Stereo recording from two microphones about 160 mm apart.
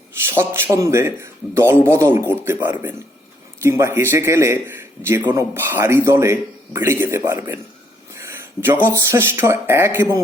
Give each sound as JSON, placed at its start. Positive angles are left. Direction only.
{"t": 0.3, "sound": "a man's voice", "side_deg": -15}